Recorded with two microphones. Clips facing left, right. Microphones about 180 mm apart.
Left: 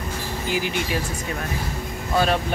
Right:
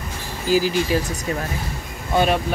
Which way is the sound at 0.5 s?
35° right (ahead or behind).